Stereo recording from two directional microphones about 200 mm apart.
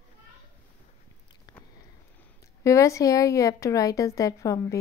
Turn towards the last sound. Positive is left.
turn(degrees=15)  # may be behind; listen again after turning